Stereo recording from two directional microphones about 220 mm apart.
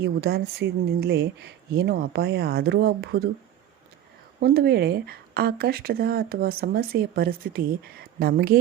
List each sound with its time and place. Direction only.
0.0 s a woman's voice: 45° right (ahead or behind)
4.4 s a woman's voice: 50° right (ahead or behind)